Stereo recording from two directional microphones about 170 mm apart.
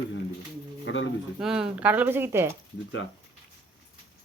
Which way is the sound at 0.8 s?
90° left.